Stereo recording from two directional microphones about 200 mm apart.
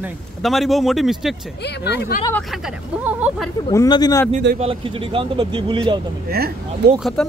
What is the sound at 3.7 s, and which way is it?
Speech, 20° left (ahead or behind).